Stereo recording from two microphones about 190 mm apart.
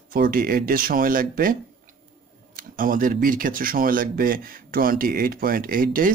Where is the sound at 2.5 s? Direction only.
45° right (ahead or behind).